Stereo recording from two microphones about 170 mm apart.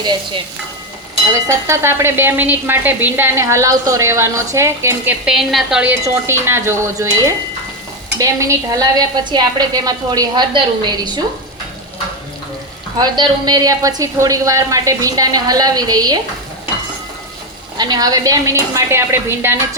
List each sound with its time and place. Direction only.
1.3 s a woman's voice: 15° right (ahead or behind)
13.0 s a woman's voice: 25° right (ahead or behind)
17.7 s a woman's voice: 25° right (ahead or behind)